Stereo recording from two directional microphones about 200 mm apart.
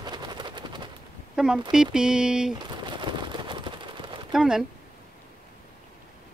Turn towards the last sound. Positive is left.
turn(degrees=-5)  # may be behind; listen again after turning